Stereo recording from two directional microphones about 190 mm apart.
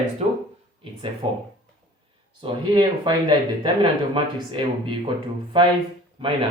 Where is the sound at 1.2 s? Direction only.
25° right (ahead or behind).